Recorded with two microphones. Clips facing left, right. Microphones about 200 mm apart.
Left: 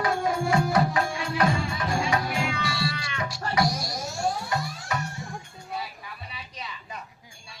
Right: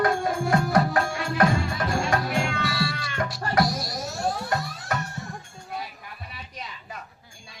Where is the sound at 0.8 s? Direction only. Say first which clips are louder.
Right 1 dB; centre (ahead or behind).